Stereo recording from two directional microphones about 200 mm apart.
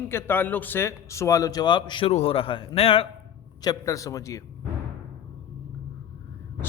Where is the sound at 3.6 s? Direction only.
20° left (ahead or behind).